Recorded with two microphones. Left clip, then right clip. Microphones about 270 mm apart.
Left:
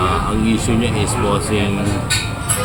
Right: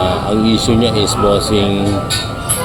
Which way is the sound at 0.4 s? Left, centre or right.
Centre.